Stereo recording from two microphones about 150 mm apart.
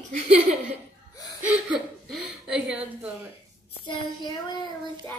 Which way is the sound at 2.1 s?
5° right (ahead or behind).